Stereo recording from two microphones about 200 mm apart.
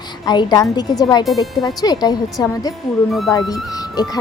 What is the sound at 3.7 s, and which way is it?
Music, 20° left (ahead or behind).